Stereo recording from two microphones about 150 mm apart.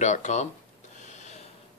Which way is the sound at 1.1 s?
50° left (ahead or behind).